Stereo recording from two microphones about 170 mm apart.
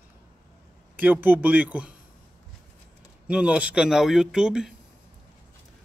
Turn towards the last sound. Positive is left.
turn(degrees=-5)  # may be behind; listen again after turning